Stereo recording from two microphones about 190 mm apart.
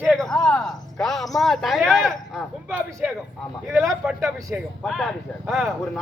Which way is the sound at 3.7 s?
15° right (ahead or behind).